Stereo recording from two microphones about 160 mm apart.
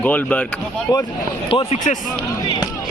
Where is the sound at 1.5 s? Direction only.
35° left (ahead or behind).